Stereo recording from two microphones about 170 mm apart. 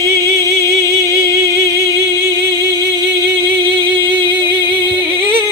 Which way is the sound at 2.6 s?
75° right (ahead or behind).